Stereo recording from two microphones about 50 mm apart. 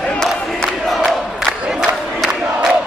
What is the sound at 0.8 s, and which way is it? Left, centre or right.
Crowd, centre.